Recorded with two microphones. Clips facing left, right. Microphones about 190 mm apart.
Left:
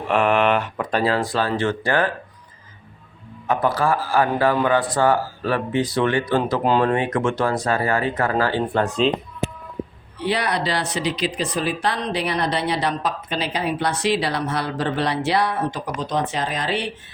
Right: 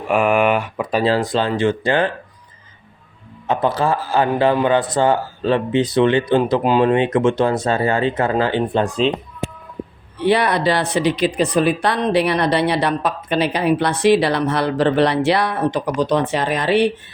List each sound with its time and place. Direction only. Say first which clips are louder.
0.1 s speech: right 2 dB; 10° right (ahead or behind)
1.0 s a man's voice: right 4 dB; 25° right (ahead or behind)
3.4 s a man's voice: right 2 dB; 25° right (ahead or behind)
10.2 s speech: right 6 dB; 55° right (ahead or behind)